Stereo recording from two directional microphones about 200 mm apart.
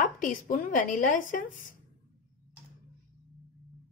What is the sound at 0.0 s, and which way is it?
A woman's voice, 40° left (ahead or behind).